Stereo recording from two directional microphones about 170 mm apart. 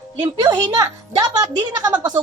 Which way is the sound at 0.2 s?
25° right (ahead or behind).